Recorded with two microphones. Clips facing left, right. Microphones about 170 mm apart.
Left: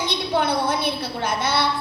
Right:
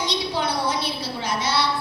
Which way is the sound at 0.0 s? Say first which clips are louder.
Left 3 dB; 55° left (ahead or behind).